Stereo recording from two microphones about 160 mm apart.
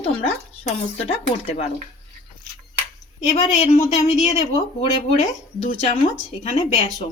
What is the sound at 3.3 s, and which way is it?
Speech, 45° left (ahead or behind).